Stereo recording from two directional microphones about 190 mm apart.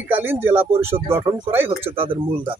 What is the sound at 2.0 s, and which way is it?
Speech, 30° right (ahead or behind).